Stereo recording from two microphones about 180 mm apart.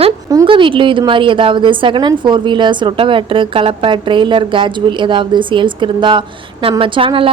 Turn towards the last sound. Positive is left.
turn(degrees=-30)  # may be behind; listen again after turning